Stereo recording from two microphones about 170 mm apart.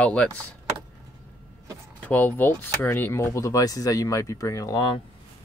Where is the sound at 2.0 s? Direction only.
10° left (ahead or behind).